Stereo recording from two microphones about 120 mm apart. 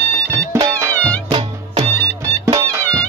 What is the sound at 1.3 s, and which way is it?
Music, 50° right (ahead or behind).